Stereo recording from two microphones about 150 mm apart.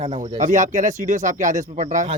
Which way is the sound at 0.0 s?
50° right (ahead or behind).